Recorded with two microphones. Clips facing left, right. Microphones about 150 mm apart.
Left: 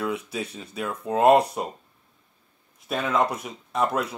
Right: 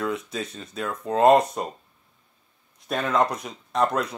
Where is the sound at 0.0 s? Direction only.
10° left (ahead or behind).